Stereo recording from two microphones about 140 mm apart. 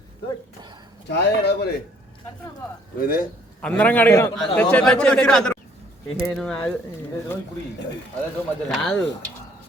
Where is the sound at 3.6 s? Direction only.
10° left (ahead or behind).